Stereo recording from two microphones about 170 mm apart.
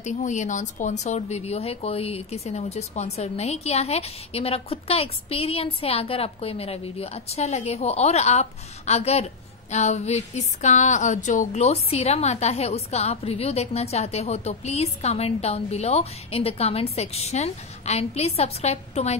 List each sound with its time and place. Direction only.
0.0 s speech: 45° left (ahead or behind)